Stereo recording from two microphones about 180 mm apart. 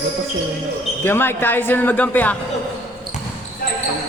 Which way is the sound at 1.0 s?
15° left (ahead or behind).